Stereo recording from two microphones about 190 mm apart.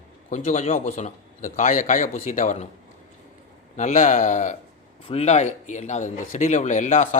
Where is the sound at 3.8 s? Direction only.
40° left (ahead or behind).